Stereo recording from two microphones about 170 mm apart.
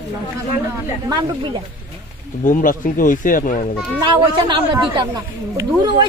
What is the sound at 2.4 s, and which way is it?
Speech, 50° left (ahead or behind).